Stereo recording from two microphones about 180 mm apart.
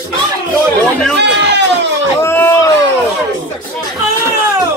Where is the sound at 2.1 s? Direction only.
15° left (ahead or behind).